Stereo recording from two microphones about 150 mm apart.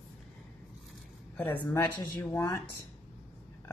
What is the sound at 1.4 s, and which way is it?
Speech, 10° left (ahead or behind).